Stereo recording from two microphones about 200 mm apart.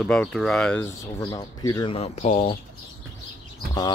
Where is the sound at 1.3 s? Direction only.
20° left (ahead or behind).